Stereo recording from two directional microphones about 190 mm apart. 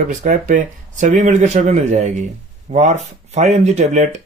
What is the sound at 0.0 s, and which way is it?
Speech, 40° right (ahead or behind).